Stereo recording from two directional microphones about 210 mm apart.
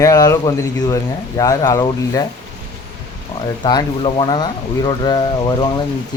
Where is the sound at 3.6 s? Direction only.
20° left (ahead or behind).